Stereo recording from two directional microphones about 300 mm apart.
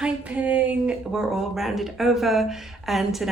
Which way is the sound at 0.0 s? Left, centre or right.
Centre.